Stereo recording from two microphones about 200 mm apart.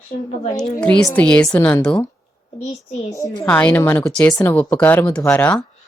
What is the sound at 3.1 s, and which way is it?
A woman's voice, 15° left (ahead or behind).